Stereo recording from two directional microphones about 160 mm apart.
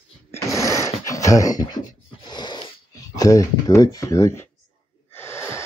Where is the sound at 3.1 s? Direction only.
20° left (ahead or behind).